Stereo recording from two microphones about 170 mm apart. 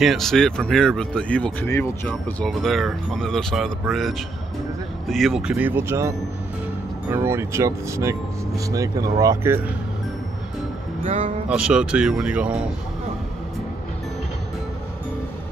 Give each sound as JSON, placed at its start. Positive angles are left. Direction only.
{"t": 0.0, "sound": "speech", "side_deg": 0}
{"t": 11.1, "sound": "speech", "side_deg": -35}
{"t": 11.4, "sound": "speech", "side_deg": -5}